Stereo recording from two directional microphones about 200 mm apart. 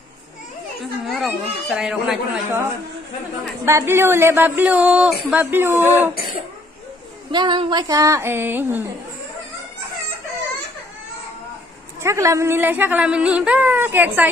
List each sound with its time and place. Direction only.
1.0 s speech: centre (ahead or behind)
3.6 s speech: 15° right (ahead or behind)
7.2 s speech: 25° right (ahead or behind)
12.0 s speech: 15° right (ahead or behind)